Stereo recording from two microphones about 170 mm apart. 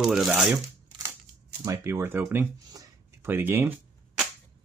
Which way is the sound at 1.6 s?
15° right (ahead or behind).